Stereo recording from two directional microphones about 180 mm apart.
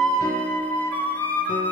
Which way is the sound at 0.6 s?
10° left (ahead or behind).